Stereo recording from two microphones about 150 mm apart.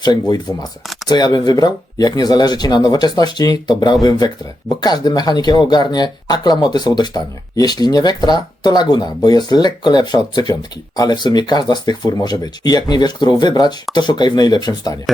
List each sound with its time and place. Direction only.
0.0 s speech: 30° left (ahead or behind)